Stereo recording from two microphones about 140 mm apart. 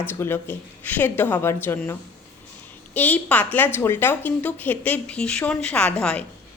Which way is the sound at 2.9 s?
10° left (ahead or behind).